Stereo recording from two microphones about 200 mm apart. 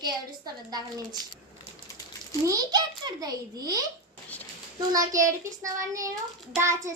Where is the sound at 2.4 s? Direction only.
15° right (ahead or behind).